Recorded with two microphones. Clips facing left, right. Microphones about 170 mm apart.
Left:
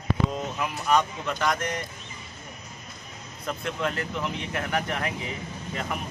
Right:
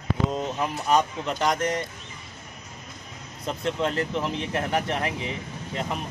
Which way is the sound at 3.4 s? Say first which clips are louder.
Right 3 dB; 30° right (ahead or behind).